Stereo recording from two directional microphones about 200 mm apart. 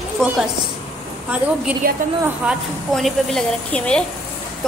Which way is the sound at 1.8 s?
50° right (ahead or behind).